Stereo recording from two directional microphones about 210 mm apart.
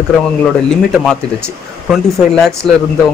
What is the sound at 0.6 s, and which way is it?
A man's voice, centre (ahead or behind).